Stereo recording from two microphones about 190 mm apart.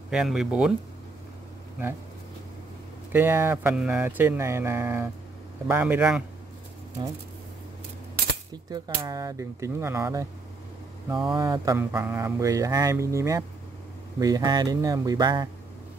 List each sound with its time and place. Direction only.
0.1 s speech: 5° right (ahead or behind)
3.1 s speech: 10° right (ahead or behind)
8.6 s speech: 20° right (ahead or behind)
11.2 s speech: 20° right (ahead or behind)